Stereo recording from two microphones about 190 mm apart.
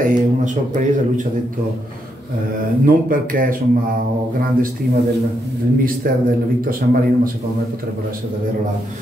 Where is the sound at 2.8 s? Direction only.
45° right (ahead or behind).